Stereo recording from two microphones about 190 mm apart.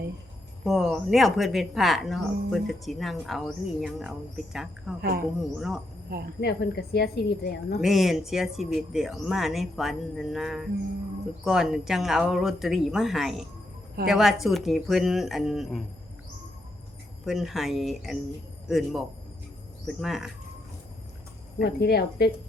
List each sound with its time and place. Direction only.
0.6 s speech: centre (ahead or behind)
6.4 s a woman's voice: 55° left (ahead or behind)
7.8 s speech: centre (ahead or behind)
17.2 s speech: centre (ahead or behind)
21.6 s a woman's voice: 60° left (ahead or behind)